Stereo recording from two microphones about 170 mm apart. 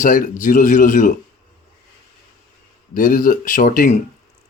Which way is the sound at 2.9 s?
55° left (ahead or behind).